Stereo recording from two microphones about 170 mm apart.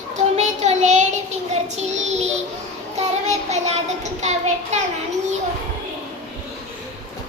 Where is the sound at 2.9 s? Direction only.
40° right (ahead or behind).